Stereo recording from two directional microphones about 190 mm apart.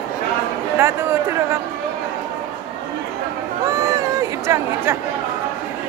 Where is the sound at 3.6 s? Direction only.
15° right (ahead or behind).